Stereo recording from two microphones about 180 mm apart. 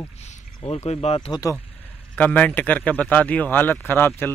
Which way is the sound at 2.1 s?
10° left (ahead or behind).